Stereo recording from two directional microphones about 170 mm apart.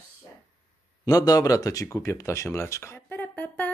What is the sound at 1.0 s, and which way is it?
Speech, 20° left (ahead or behind).